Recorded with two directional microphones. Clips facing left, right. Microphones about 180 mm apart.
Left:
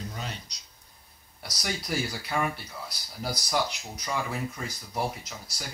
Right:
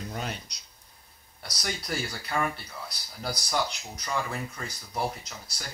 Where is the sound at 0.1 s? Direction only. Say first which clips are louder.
Right 3 dB; 55° right (ahead or behind).